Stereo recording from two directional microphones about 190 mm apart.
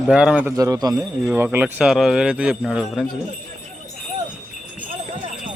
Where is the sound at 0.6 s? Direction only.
20° right (ahead or behind).